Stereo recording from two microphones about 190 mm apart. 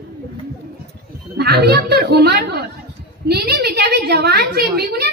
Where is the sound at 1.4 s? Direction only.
55° right (ahead or behind).